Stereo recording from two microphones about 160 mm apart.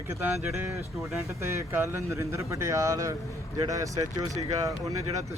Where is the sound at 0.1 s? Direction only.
10° right (ahead or behind).